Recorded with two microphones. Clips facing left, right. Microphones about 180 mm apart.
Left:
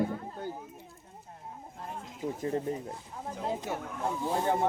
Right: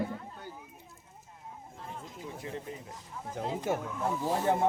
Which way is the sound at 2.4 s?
40° left (ahead or behind).